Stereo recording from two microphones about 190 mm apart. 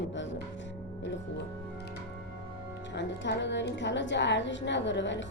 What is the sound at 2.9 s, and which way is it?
A woman's voice, 65° left (ahead or behind).